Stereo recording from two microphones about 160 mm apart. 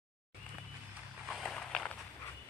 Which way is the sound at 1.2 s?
Centre (ahead or behind).